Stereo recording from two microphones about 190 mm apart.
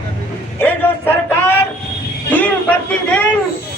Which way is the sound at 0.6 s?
10° left (ahead or behind).